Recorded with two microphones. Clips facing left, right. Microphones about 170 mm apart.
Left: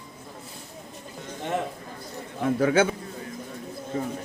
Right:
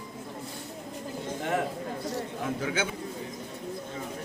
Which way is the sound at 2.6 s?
55° left (ahead or behind).